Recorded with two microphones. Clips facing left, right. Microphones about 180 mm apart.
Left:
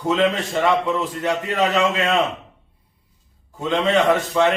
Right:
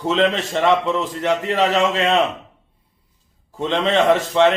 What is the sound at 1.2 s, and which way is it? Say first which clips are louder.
Speech: right 4 dB; 25° right (ahead or behind).